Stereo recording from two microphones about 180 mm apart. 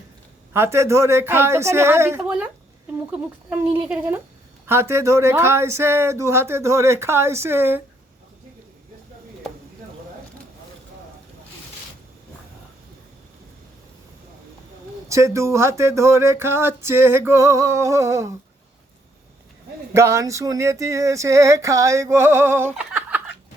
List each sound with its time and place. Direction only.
0.5 s speech: 15° right (ahead or behind)
15.1 s speech: 15° right (ahead or behind)
19.9 s speech: 15° right (ahead or behind)
22.7 s chuckle: 5° right (ahead or behind)